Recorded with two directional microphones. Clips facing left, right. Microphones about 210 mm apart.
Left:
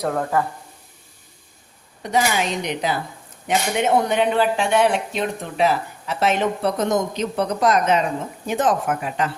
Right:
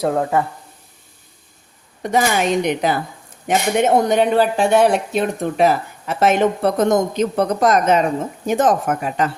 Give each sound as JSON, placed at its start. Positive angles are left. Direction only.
{"t": 0.0, "sound": "speech", "side_deg": -25}
{"t": 2.0, "sound": "speech", "side_deg": -50}